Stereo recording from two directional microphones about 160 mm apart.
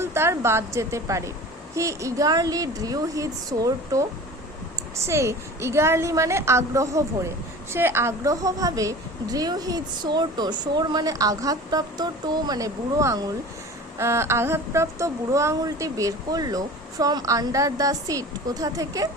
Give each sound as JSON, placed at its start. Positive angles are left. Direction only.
{"t": 0.0, "sound": "a woman's voice", "side_deg": -15}